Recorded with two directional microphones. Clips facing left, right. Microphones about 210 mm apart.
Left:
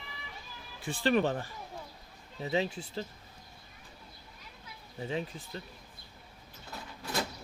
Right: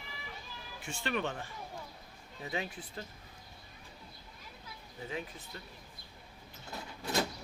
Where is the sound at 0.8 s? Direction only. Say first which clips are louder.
Left 8 dB; 35° left (ahead or behind).